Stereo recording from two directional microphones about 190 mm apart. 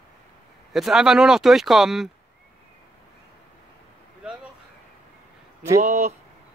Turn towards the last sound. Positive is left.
turn(degrees=-35)  # may be behind; listen again after turning